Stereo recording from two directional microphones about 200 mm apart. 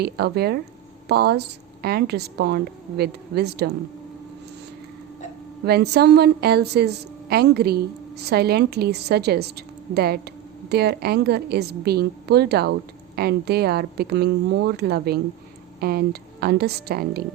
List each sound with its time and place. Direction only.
0.0 s a woman's voice: 50° right (ahead or behind)
5.6 s a woman's voice: 55° right (ahead or behind)